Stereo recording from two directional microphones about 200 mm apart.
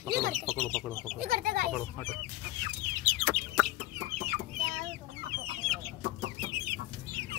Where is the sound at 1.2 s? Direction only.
45° right (ahead or behind).